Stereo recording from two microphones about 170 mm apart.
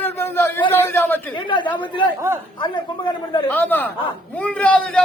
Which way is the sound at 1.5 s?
30° left (ahead or behind).